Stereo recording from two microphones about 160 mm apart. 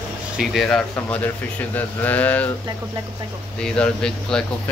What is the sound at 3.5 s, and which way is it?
Speech, 5° left (ahead or behind).